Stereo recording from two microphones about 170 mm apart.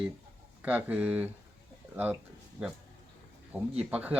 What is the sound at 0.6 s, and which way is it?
Speech, 10° right (ahead or behind).